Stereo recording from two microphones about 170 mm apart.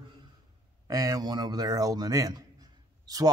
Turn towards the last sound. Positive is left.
turn(degrees=-20)  # may be behind; listen again after turning